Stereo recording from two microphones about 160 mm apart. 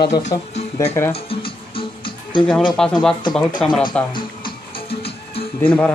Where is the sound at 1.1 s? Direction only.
35° left (ahead or behind).